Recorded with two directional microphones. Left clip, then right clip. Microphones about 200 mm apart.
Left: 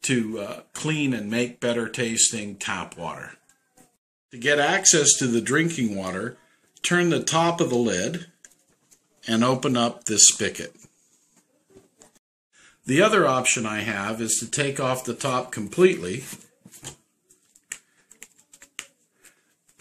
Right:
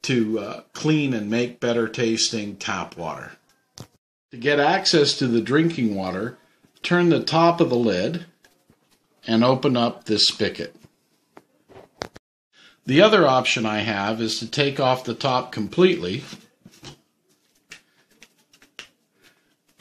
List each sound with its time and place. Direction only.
0.0 s speech: 40° right (ahead or behind)
4.3 s a man's voice: 30° right (ahead or behind)
12.5 s speech: 45° right (ahead or behind)
18.2 s typing: centre (ahead or behind)